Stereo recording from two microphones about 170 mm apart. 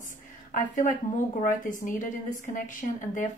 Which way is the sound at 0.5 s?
55° left (ahead or behind).